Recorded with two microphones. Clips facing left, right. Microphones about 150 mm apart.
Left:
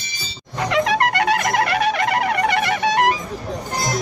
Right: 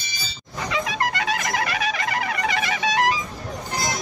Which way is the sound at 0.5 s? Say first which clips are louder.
Left 7 dB; 65° left (ahead or behind).